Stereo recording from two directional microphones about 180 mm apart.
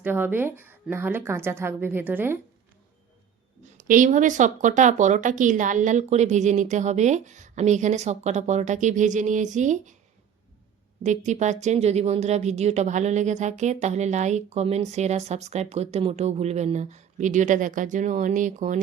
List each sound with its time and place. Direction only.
0.0 s a woman's voice: 10° right (ahead or behind)
3.6 s speech: 50° right (ahead or behind)
11.0 s speech: 40° right (ahead or behind)